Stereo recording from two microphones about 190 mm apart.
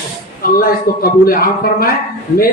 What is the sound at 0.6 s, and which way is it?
A man's voice, 50° left (ahead or behind).